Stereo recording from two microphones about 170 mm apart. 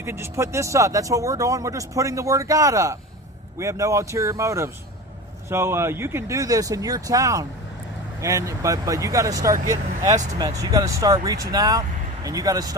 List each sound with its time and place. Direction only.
0.0 s a man's voice: 15° right (ahead or behind)